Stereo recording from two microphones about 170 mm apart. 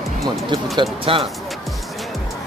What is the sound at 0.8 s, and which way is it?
Speech, 35° right (ahead or behind).